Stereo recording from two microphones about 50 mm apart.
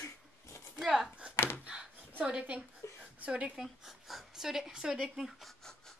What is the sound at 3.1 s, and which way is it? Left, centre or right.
Speech, right.